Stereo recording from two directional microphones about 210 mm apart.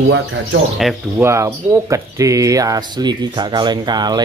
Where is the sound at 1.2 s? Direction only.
15° right (ahead or behind).